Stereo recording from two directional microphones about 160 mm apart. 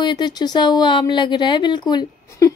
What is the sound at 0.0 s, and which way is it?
Speech, 25° left (ahead or behind).